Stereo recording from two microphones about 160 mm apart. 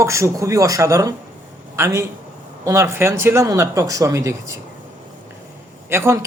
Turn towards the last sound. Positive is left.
turn(degrees=-15)  # may be behind; listen again after turning